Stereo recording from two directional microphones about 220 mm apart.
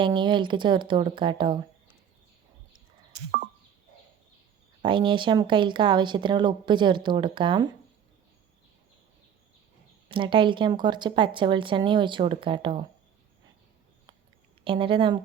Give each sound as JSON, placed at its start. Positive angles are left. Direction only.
{"t": 0.0, "sound": "speech", "side_deg": -20}
{"t": 4.8, "sound": "speech", "side_deg": -20}
{"t": 10.1, "sound": "speech", "side_deg": -20}
{"t": 14.6, "sound": "a woman's voice", "side_deg": -25}